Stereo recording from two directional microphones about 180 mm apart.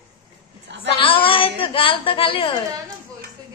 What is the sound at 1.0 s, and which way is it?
A woman's voice, 30° left (ahead or behind).